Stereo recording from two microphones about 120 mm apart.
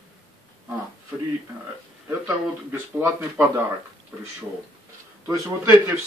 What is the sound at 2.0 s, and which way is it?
Speech, 20° right (ahead or behind).